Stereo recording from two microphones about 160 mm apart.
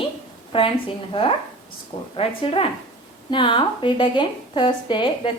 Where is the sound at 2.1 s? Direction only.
35° left (ahead or behind).